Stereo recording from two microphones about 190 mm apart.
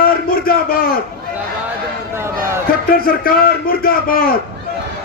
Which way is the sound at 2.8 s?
50° left (ahead or behind).